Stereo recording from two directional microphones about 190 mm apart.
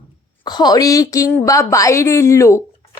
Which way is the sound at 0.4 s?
20° left (ahead or behind).